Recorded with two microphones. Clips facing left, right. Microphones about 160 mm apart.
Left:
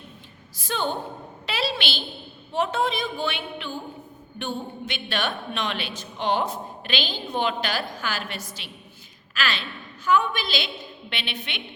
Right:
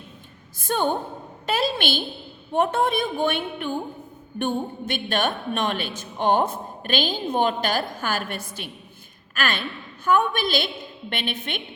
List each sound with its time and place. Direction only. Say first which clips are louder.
0.6 s a woman's voice: right 4 dB; 50° right (ahead or behind)
1.5 s a sound: right 4 dB; 50° right (ahead or behind)
2.5 s a woman's voice: right 3 dB; 55° right (ahead or behind)